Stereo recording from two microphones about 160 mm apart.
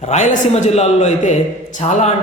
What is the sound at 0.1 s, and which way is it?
A man's voice, 45° left (ahead or behind).